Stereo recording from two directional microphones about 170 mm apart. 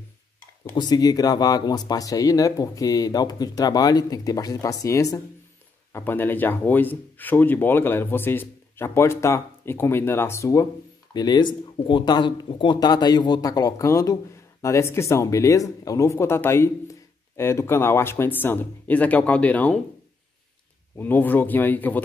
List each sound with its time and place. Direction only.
0.7 s speech: 25° left (ahead or behind); by 19.8 s 10° left (ahead or behind)
20.9 s speech: 10° left (ahead or behind)